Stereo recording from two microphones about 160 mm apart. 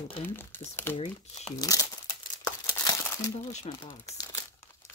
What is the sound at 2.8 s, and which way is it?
Crumpling, 20° left (ahead or behind).